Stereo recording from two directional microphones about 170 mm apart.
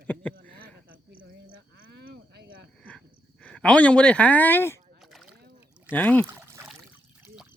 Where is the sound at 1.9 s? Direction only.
75° right (ahead or behind).